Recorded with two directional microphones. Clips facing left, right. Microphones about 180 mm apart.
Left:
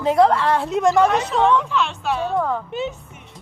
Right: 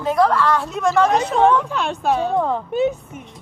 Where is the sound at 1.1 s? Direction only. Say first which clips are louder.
Right 3 dB; 40° right (ahead or behind).